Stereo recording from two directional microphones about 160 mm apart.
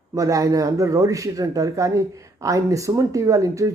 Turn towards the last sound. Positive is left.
turn(degrees=-20)  # may be behind; listen again after turning